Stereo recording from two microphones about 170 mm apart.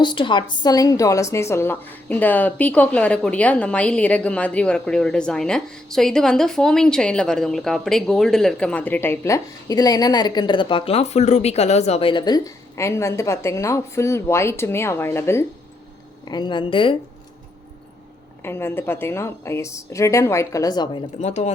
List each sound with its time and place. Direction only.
0.0 s a woman's voice: 30° left (ahead or behind)
16.2 s a woman's voice: 25° left (ahead or behind)
18.4 s a woman's voice: 15° left (ahead or behind)
21.2 s speech: 40° left (ahead or behind)